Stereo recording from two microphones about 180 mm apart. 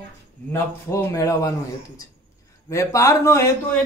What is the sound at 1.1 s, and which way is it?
Speech, 20° left (ahead or behind).